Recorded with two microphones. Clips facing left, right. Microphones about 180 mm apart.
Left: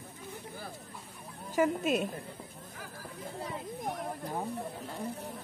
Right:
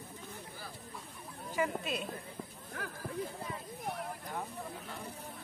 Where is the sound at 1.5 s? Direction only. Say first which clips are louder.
Left 7 dB; 45° left (ahead or behind).